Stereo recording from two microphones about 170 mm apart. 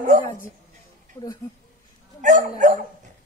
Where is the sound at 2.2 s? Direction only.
45° right (ahead or behind).